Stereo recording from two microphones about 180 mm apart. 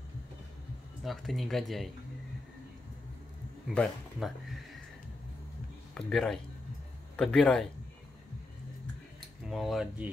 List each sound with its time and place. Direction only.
1.0 s speech: centre (ahead or behind)
3.6 s speech: centre (ahead or behind)
5.9 s speech: 5° left (ahead or behind)
9.5 s speech: centre (ahead or behind)